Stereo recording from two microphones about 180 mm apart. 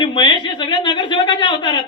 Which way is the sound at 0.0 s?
25° left (ahead or behind).